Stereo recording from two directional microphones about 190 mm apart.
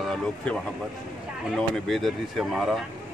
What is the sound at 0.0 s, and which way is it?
Speech, 5° left (ahead or behind).